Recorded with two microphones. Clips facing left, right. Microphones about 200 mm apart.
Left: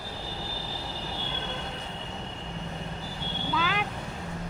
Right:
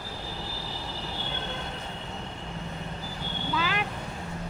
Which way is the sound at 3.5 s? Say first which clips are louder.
Even; centre (ahead or behind).